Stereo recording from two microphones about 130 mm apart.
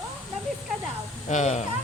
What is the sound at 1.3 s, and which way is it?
Speech, 60° left (ahead or behind).